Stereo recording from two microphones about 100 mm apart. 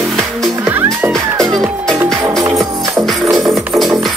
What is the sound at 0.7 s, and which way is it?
Music, 20° right (ahead or behind).